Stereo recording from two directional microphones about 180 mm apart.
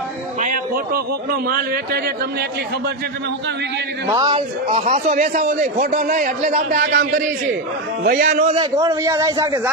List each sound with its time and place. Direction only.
0.3 s a sound: 45° right (ahead or behind)
1.5 s a man's voice: 55° right (ahead or behind)
4.1 s a man's voice: 25° right (ahead or behind); by 8.3 s 55° right (ahead or behind)
8.3 s a man's voice: 40° right (ahead or behind)
8.5 s a man's voice: 20° right (ahead or behind)